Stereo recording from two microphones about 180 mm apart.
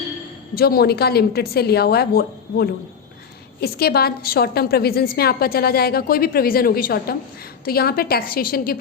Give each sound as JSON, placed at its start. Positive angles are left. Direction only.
{"t": 0.5, "sound": "a woman's voice", "side_deg": 60}